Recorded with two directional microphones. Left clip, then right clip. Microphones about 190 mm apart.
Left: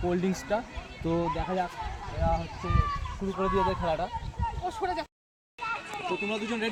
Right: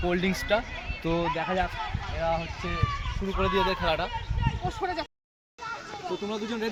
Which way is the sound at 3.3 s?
45° right (ahead or behind).